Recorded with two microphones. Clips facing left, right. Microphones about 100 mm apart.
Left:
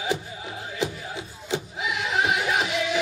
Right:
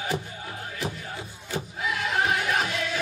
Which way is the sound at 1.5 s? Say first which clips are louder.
Left 1 dB; 20° left (ahead or behind).